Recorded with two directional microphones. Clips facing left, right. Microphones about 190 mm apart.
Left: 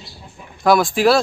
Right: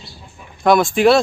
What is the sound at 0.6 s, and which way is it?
Speech, centre (ahead or behind).